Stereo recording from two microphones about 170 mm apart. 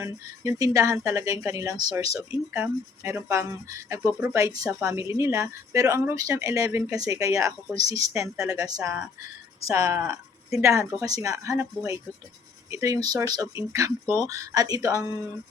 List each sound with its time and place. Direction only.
0.0 s speech: 20° right (ahead or behind)
12.7 s speech: 20° right (ahead or behind)